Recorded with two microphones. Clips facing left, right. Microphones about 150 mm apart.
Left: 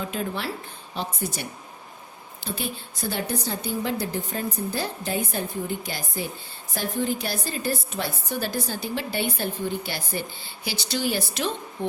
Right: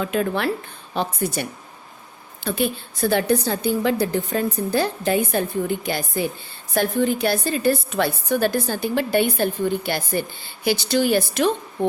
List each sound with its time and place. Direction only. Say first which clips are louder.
0.0 s a woman's voice: right 7 dB; 70° right (ahead or behind); by 11.5 s 55° right (ahead or behind)